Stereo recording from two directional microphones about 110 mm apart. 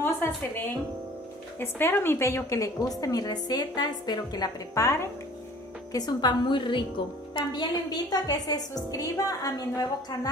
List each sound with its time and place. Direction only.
0.0 s music: 20° left (ahead or behind)
1.6 s a woman's voice: 20° left (ahead or behind)
5.9 s a woman's voice: 40° left (ahead or behind)